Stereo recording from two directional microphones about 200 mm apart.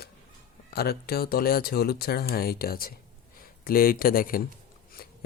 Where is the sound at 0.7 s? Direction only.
50° left (ahead or behind).